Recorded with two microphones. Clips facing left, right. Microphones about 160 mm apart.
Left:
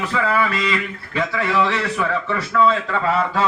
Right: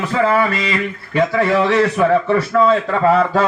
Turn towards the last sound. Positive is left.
turn(degrees=-50)  # may be behind; listen again after turning